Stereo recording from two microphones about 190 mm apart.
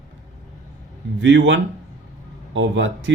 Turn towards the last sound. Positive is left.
turn(degrees=-75)  # may be behind; listen again after turning